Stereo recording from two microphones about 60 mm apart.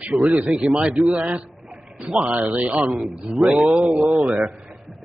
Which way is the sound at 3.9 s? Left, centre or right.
Right.